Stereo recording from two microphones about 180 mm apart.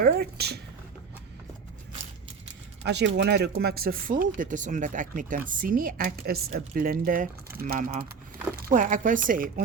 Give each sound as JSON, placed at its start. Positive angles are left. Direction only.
{"t": 0.0, "sound": "speech", "side_deg": -60}
{"t": 2.8, "sound": "speech", "side_deg": -70}